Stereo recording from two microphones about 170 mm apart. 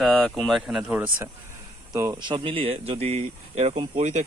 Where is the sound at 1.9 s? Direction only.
20° right (ahead or behind); by 4.2 s 40° right (ahead or behind).